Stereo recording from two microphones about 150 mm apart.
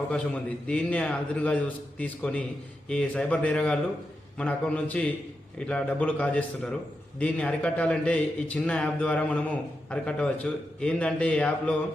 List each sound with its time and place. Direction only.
0.1 s a man's voice: 10° left (ahead or behind)